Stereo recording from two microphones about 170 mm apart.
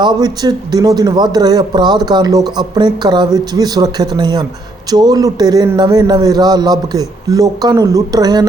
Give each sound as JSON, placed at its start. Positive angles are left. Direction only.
{"t": 0.0, "sound": "speech", "side_deg": -25}